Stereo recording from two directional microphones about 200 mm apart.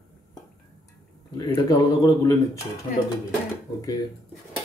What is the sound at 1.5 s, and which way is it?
Speech, 15° left (ahead or behind).